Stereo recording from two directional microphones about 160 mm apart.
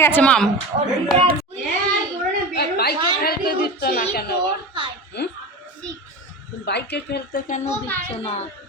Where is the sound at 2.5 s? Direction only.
85° left.